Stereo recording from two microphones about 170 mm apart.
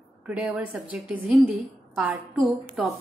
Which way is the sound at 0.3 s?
5° right (ahead or behind).